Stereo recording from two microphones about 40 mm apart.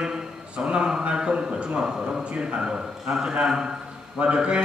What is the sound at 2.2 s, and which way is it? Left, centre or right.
A man's voice, right.